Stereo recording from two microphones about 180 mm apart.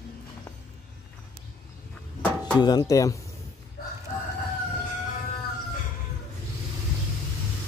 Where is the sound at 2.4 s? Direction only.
20° left (ahead or behind).